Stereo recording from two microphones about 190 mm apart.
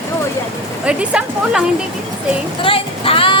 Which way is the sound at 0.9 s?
5° right (ahead or behind).